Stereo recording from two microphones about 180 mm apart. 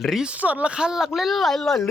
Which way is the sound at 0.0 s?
5° right (ahead or behind).